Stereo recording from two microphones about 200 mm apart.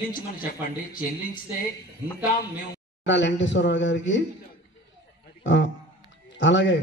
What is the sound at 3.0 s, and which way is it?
Speech, 65° left (ahead or behind).